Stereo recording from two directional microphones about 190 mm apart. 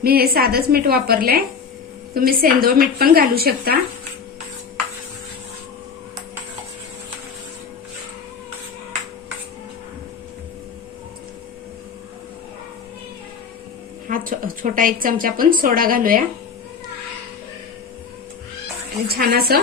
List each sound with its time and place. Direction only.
0.0 s a woman's voice: 55° right (ahead or behind)
14.1 s speech: 45° right (ahead or behind)
19.0 s a woman's voice: 55° right (ahead or behind)